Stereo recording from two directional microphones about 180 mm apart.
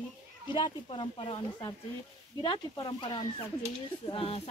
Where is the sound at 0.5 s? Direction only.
25° left (ahead or behind).